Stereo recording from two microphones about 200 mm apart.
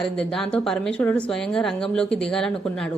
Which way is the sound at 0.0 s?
5° left (ahead or behind).